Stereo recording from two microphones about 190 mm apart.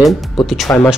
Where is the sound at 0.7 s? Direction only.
15° left (ahead or behind).